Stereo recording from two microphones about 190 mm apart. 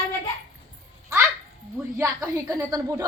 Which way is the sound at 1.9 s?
15° right (ahead or behind).